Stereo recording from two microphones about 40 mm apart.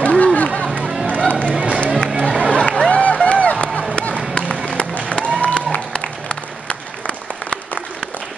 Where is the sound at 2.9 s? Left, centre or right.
Left.